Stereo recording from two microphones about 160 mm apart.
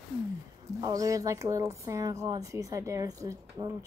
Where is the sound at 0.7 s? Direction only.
20° right (ahead or behind).